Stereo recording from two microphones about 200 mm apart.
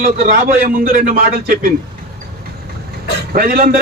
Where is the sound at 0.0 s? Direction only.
45° right (ahead or behind).